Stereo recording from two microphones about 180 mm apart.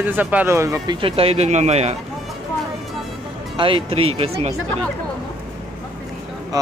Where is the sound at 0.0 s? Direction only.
10° right (ahead or behind).